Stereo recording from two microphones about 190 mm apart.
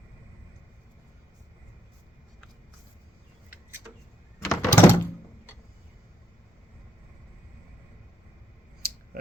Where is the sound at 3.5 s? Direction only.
10° right (ahead or behind).